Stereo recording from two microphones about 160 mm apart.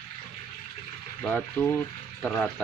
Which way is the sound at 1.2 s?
5° left (ahead or behind).